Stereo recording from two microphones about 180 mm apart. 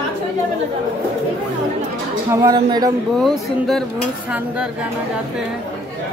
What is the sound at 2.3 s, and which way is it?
Speech, 20° right (ahead or behind).